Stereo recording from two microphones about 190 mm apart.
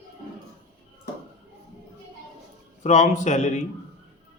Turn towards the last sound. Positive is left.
turn(degrees=40)  # may be behind; listen again after turning